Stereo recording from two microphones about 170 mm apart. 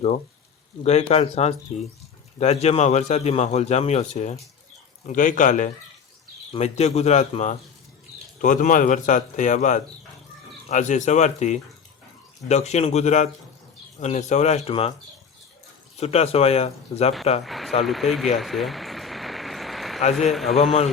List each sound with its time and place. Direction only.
0.8 s a man's voice: 40° left (ahead or behind)
16.0 s a man's voice: 40° left (ahead or behind)
17.4 s speech: centre (ahead or behind)
18.3 s a sound: centre (ahead or behind)
20.1 s speech: centre (ahead or behind)